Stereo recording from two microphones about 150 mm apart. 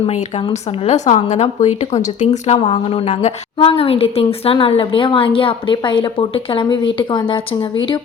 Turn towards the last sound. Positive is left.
turn(degrees=35)  # may be behind; listen again after turning